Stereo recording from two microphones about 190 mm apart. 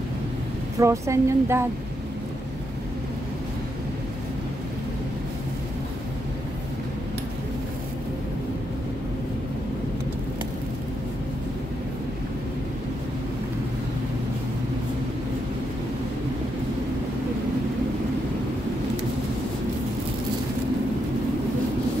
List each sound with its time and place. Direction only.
0.7 s speech: 15° right (ahead or behind)